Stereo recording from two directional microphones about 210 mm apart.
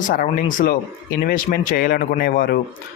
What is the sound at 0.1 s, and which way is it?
Speech, 40° left (ahead or behind).